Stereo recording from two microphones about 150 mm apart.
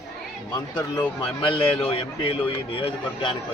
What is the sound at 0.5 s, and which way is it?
A man's voice, 30° left (ahead or behind).